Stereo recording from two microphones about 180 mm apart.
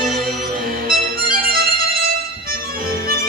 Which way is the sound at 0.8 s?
55° right (ahead or behind).